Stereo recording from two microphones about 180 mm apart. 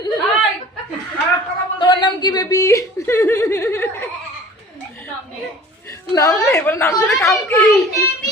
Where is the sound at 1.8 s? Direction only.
25° left (ahead or behind).